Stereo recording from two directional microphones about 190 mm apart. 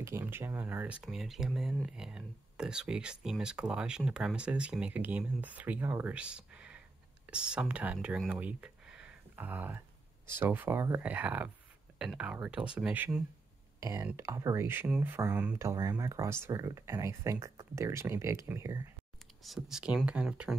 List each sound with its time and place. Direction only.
0.0 s speech: 10° right (ahead or behind)
19.4 s speech: centre (ahead or behind)